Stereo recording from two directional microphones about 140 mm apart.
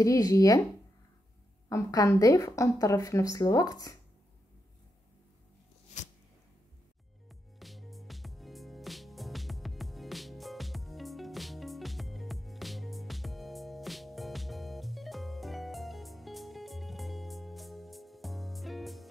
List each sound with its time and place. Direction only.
0.0 s a woman's voice: 25° left (ahead or behind)
1.7 s a woman's voice: 25° left (ahead or behind)
7.2 s music: centre (ahead or behind)